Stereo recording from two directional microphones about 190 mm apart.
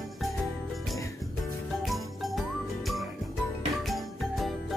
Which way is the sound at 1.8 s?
Centre (ahead or behind).